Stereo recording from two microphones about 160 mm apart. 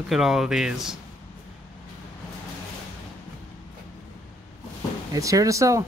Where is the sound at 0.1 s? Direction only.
Centre (ahead or behind).